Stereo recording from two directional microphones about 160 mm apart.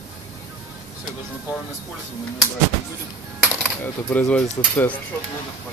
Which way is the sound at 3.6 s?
10° left (ahead or behind).